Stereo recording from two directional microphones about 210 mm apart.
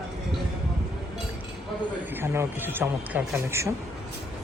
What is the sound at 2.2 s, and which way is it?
Speech, 10° right (ahead or behind).